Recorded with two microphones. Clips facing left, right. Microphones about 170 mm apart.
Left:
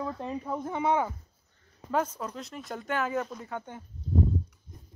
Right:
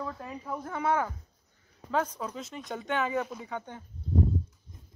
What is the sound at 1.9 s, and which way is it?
Speech, 5° left (ahead or behind).